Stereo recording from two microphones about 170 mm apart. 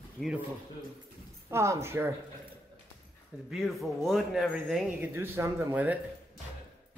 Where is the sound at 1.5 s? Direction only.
15° right (ahead or behind).